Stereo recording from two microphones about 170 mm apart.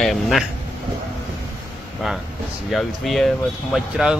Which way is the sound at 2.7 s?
Centre (ahead or behind).